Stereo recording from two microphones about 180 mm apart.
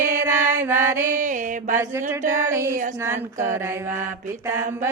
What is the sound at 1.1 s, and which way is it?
Mantra, 45° right (ahead or behind).